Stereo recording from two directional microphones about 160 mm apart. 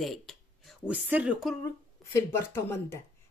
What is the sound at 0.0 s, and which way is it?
Speech, centre (ahead or behind).